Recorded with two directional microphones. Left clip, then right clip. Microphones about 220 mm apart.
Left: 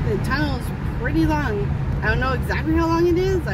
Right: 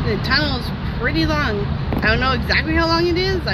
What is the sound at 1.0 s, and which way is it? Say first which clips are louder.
Speech: right 2 dB; 20° left (ahead or behind).